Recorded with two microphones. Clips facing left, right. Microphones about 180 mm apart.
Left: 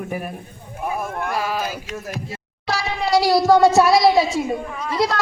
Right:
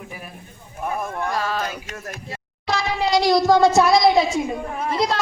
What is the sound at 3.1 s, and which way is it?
Speech, 5° left (ahead or behind).